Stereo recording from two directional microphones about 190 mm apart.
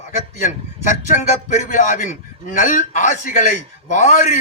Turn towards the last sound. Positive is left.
turn(degrees=40)  # may be behind; listen again after turning